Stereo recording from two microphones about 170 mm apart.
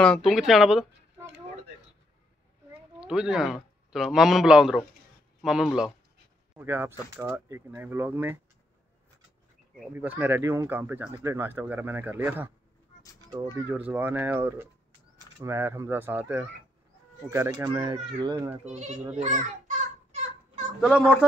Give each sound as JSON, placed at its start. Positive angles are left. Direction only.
{"t": 0.0, "sound": "speech", "side_deg": 0}
{"t": 3.0, "sound": "a man's voice", "side_deg": -5}
{"t": 6.5, "sound": "speech", "side_deg": -15}
{"t": 9.9, "sound": "speech", "side_deg": -10}
{"t": 18.6, "sound": "speech", "side_deg": -40}
{"t": 19.1, "sound": "children playing", "side_deg": -45}
{"t": 20.8, "sound": "speech", "side_deg": -5}